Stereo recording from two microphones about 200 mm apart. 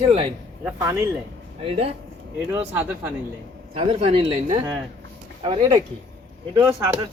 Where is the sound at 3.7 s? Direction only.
30° right (ahead or behind).